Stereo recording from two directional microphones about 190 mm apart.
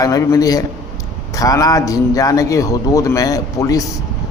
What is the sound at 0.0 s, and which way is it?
A man's voice, 20° left (ahead or behind).